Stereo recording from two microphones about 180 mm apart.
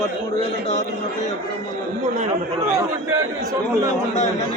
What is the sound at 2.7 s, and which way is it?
Speech, 15° right (ahead or behind).